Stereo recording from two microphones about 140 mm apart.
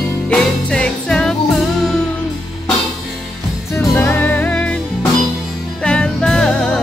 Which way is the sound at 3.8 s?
15° left (ahead or behind).